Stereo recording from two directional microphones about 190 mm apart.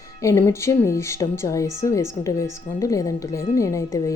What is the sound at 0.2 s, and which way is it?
A woman's voice, 15° left (ahead or behind).